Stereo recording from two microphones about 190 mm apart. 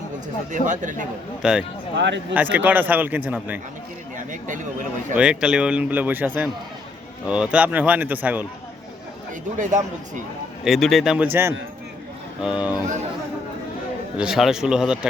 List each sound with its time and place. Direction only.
0.5 s speech: 40° right (ahead or behind)
1.4 s a man's voice: 5° right (ahead or behind)
2.0 s speech: 65° right (ahead or behind)
2.3 s a man's voice: 10° right (ahead or behind)
4.3 s speech: 40° right (ahead or behind)
5.1 s a man's voice: 5° right (ahead or behind)
10.6 s a man's voice: centre (ahead or behind)
14.2 s a man's voice: centre (ahead or behind)